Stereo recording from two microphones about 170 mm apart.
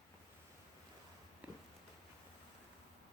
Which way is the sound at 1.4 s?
10° right (ahead or behind).